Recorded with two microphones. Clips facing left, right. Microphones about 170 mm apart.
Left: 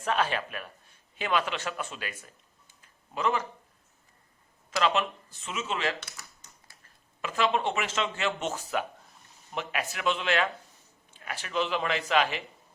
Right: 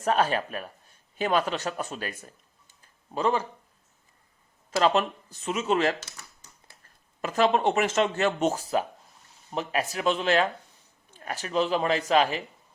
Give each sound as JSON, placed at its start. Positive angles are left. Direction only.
{"t": 0.0, "sound": "a man's voice", "side_deg": -40}
{"t": 2.8, "sound": "a sound", "side_deg": -30}
{"t": 4.8, "sound": "speech", "side_deg": -40}
{"t": 7.2, "sound": "speech", "side_deg": -40}